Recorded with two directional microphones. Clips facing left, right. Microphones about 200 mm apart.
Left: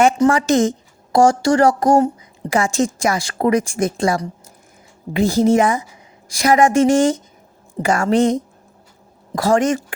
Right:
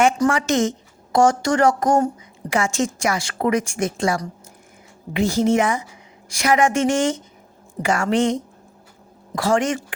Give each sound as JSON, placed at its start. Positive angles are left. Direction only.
{"t": 0.3, "sound": "a woman's voice", "side_deg": 35}